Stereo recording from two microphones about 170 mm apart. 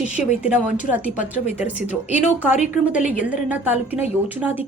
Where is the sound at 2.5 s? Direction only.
45° left (ahead or behind).